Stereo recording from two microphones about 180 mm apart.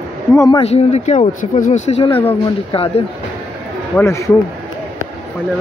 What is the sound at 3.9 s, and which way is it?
Speech, 15° left (ahead or behind).